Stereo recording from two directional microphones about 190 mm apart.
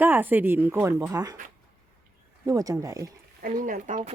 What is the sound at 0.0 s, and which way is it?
Speech, 10° right (ahead or behind).